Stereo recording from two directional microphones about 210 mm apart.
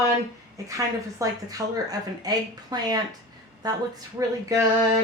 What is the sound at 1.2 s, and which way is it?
A woman's voice, 15° right (ahead or behind).